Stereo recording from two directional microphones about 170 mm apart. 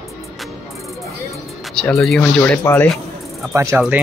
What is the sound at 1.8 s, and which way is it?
Speech, 5° left (ahead or behind).